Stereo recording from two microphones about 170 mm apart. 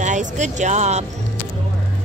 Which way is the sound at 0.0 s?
45° right (ahead or behind).